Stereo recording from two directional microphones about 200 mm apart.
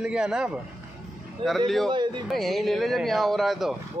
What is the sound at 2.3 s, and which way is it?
A man's voice, centre (ahead or behind).